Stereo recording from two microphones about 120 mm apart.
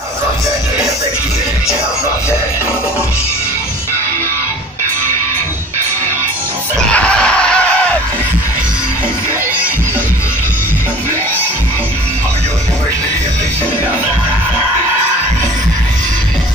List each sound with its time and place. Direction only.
6.9 s screaming: 10° left (ahead or behind)